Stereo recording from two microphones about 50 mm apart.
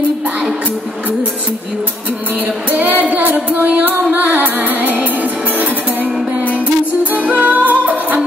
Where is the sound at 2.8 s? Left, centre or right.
Right.